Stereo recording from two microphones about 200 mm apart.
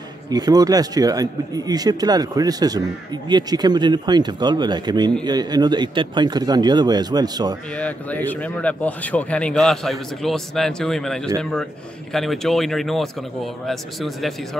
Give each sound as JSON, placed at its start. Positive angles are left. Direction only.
{"t": 0.3, "sound": "speech", "side_deg": -20}
{"t": 7.7, "sound": "speech", "side_deg": 5}